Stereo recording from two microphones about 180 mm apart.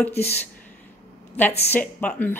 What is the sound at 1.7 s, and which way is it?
Speech, 5° left (ahead or behind).